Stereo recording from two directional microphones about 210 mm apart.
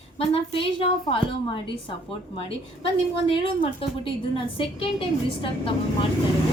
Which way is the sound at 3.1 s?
25° left (ahead or behind).